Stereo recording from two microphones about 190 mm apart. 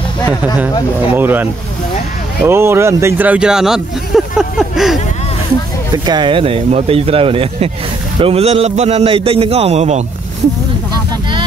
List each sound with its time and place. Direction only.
1.1 s speech: 10° right (ahead or behind)
6.0 s a man's voice: 25° right (ahead or behind)